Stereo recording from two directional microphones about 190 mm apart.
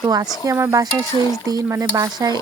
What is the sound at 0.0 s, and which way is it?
Stir, 20° right (ahead or behind).